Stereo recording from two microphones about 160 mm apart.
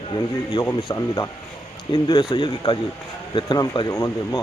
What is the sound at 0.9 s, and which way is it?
Speech, 20° left (ahead or behind).